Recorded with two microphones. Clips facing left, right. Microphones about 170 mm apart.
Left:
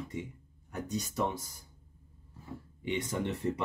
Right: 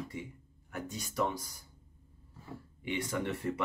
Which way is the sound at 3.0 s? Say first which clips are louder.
Even; 20° left (ahead or behind).